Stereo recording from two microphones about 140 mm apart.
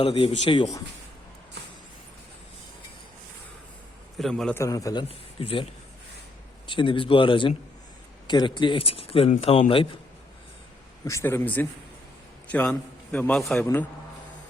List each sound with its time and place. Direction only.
0.0 s speech: 45° left (ahead or behind)
4.2 s a man's voice: centre (ahead or behind)
4.5 s a man's voice: 25° left (ahead or behind)
5.0 s speech: 45° left (ahead or behind)
6.7 s speech: 35° left (ahead or behind)
11.0 s a man's voice: 20° left (ahead or behind)